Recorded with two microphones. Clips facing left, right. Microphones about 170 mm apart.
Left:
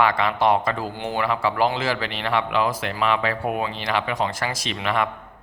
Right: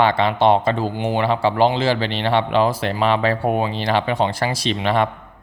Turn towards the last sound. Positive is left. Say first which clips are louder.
# right 5 dB
turn(degrees=-30)  # may be behind; listen again after turning